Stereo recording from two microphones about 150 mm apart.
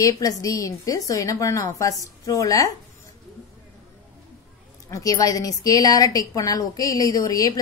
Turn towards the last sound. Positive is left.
turn(degrees=25)  # may be behind; listen again after turning